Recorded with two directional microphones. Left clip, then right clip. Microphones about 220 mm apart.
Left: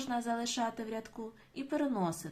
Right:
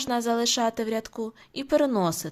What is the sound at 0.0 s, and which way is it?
Speech, 50° right (ahead or behind).